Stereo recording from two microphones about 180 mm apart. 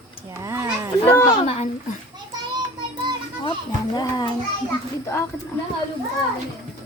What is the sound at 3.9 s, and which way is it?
Speech, 20° left (ahead or behind).